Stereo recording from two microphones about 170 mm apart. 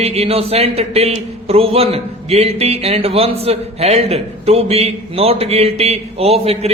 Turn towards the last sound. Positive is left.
turn(degrees=-35)  # may be behind; listen again after turning